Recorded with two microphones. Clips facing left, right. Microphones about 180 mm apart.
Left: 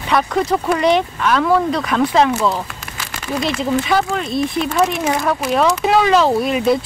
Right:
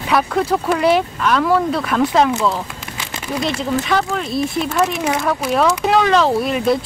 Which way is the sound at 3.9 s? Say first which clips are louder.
Left 1 dB; centre (ahead or behind).